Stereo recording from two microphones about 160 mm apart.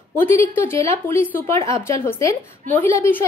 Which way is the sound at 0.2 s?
15° left (ahead or behind).